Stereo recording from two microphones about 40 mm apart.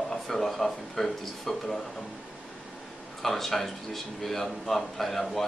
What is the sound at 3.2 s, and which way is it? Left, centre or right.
A man's voice, centre.